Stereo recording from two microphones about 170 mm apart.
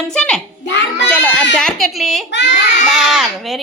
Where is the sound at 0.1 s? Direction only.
5° left (ahead or behind).